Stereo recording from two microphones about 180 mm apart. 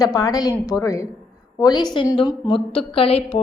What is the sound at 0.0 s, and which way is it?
A woman's voice, 20° left (ahead or behind).